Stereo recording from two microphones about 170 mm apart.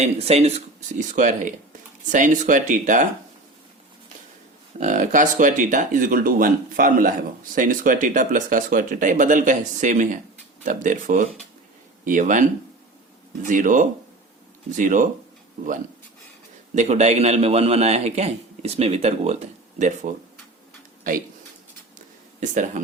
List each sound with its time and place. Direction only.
0.0 s a man's voice: 35° right (ahead or behind)
0.9 s speech: 45° right (ahead or behind)
4.8 s speech: 50° right (ahead or behind)
13.5 s speech: 50° right (ahead or behind)
16.7 s a man's voice: 40° right (ahead or behind)
21.9 s a sound: 45° right (ahead or behind)